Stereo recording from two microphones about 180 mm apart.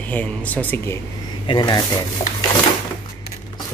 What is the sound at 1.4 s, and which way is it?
Speech, 25° left (ahead or behind).